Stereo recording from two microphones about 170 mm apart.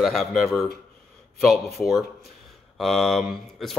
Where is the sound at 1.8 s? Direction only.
Centre (ahead or behind).